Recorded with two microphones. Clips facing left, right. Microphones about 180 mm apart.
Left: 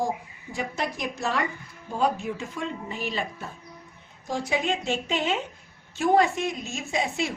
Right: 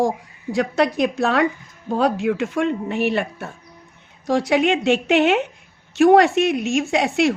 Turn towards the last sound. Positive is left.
turn(degrees=-80)